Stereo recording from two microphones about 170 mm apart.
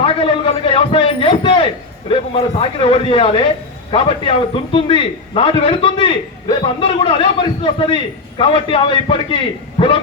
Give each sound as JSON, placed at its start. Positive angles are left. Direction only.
{"t": 0.0, "sound": "a man's voice", "side_deg": 30}